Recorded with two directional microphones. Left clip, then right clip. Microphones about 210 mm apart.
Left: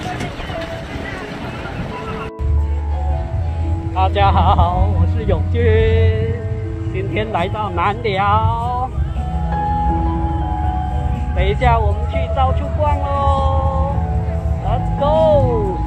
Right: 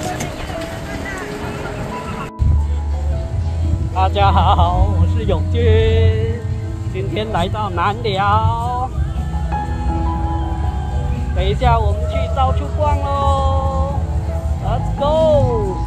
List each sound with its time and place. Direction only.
3.9 s speech: 5° right (ahead or behind)
11.3 s speech: centre (ahead or behind)
14.7 s speech: centre (ahead or behind)